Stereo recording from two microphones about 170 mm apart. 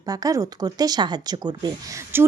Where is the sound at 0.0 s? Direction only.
20° right (ahead or behind).